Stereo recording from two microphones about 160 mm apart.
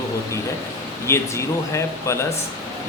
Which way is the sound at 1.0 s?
15° left (ahead or behind).